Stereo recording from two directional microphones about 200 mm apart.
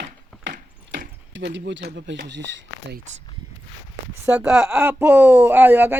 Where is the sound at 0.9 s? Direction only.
65° right (ahead or behind).